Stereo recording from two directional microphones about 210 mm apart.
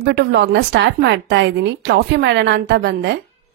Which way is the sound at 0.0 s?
55° right (ahead or behind).